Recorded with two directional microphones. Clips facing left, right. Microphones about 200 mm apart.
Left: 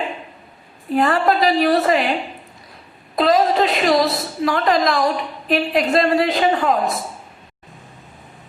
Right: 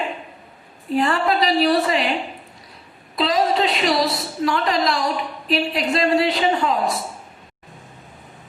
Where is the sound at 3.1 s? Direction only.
50° left (ahead or behind).